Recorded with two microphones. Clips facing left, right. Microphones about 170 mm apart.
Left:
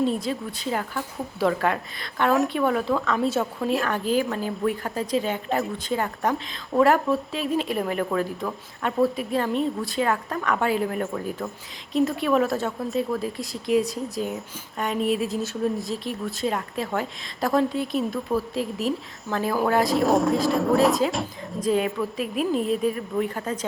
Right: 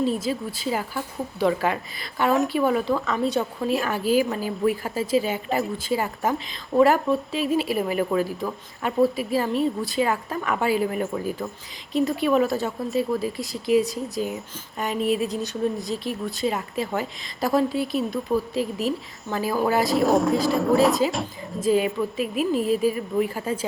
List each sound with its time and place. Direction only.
0.0 s a woman's voice: centre (ahead or behind)